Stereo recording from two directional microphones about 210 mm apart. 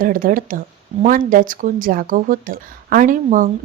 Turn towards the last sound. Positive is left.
turn(degrees=-40)  # may be behind; listen again after turning